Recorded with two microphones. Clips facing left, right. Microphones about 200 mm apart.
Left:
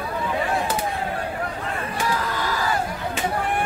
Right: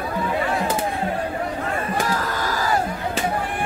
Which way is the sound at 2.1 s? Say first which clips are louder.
Right 1 dB; 45° right (ahead or behind).